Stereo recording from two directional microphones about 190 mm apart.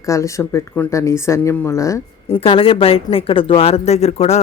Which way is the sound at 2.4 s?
30° left (ahead or behind).